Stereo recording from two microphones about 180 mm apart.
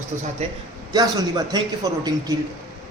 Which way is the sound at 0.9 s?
20° right (ahead or behind).